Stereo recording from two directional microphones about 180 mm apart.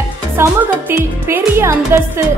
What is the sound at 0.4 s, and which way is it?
Speech, 15° right (ahead or behind).